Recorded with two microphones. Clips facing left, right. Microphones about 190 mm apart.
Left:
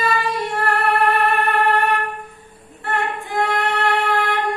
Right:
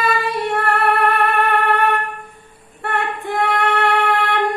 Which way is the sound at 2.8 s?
60° right (ahead or behind).